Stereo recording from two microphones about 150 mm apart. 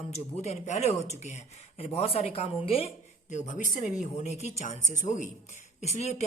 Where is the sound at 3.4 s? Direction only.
60° left (ahead or behind).